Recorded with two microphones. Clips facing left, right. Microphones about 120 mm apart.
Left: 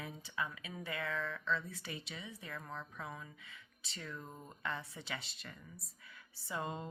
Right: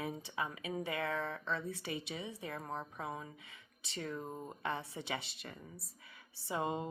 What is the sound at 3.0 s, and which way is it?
A woman's voice, 30° right (ahead or behind).